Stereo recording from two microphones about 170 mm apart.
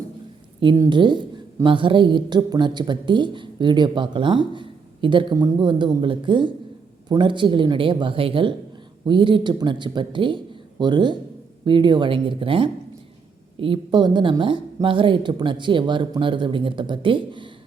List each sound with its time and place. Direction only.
0.8 s a woman's voice: 25° right (ahead or behind)